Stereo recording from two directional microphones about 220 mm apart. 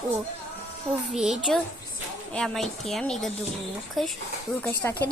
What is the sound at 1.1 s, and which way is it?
A woman's voice, centre (ahead or behind).